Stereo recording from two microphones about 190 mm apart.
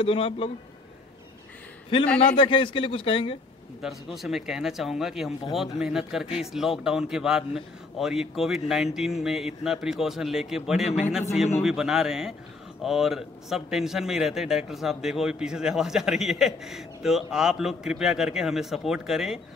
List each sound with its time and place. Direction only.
0.0 s speech: 30° left (ahead or behind)
2.1 s speech: 25° left (ahead or behind)
3.8 s speech: centre (ahead or behind)